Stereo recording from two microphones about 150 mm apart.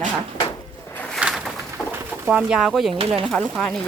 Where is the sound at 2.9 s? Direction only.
40° right (ahead or behind).